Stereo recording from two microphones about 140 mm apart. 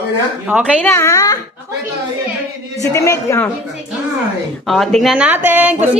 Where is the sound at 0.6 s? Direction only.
5° left (ahead or behind).